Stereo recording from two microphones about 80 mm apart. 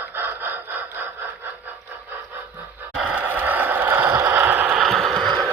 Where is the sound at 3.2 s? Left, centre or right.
Right.